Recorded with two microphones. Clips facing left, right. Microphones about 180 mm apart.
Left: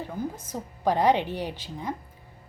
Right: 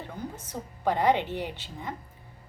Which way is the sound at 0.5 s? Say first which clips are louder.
Left 2 dB; 15° left (ahead or behind).